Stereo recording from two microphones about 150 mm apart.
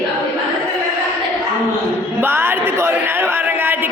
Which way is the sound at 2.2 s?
15° right (ahead or behind).